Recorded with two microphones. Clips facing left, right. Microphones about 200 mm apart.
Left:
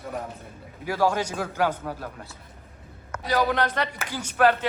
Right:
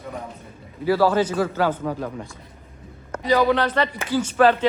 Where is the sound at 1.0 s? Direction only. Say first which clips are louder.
Right 3 dB; 10° left (ahead or behind).